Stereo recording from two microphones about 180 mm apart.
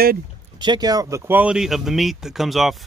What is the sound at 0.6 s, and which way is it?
Speech, 25° right (ahead or behind).